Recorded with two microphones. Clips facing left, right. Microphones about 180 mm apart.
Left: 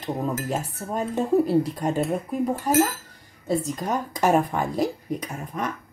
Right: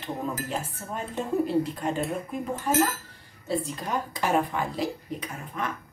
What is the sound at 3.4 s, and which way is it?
A woman's voice, 45° left (ahead or behind).